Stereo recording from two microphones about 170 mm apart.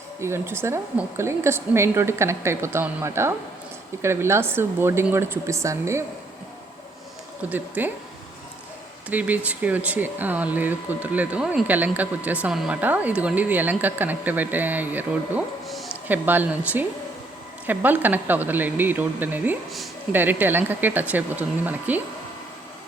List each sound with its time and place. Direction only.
0.2 s speech: 15° right (ahead or behind)
7.5 s speech: 10° right (ahead or behind)
9.0 s speech: 10° right (ahead or behind)
16.0 s speech: 10° right (ahead or behind)